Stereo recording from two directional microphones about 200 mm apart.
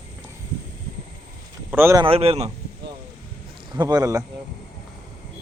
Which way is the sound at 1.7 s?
10° right (ahead or behind).